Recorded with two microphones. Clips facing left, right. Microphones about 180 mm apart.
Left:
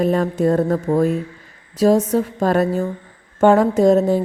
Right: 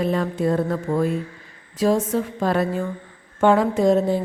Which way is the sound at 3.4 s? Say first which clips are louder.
Left 4 dB; 45° left (ahead or behind).